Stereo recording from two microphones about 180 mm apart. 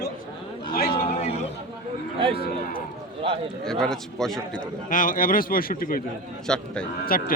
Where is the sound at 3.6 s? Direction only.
5° left (ahead or behind).